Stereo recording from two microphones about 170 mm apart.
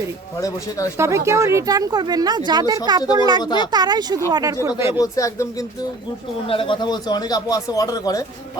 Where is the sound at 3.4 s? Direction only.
25° left (ahead or behind).